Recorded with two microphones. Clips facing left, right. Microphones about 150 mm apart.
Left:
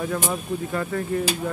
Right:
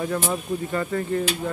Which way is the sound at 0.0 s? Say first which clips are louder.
Right 1 dB; centre (ahead or behind).